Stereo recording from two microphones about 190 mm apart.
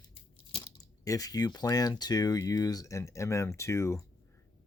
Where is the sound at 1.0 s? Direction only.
20° left (ahead or behind).